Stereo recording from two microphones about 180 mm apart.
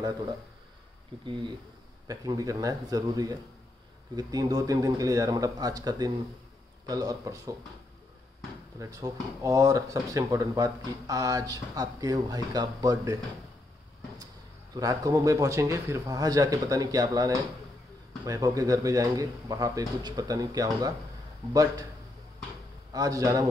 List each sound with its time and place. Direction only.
2.0 s speech: 20° right (ahead or behind)
8.7 s speech: 20° right (ahead or behind)
22.9 s speech: 20° right (ahead or behind)